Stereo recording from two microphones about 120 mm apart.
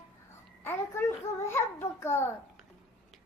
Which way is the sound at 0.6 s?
15° left (ahead or behind).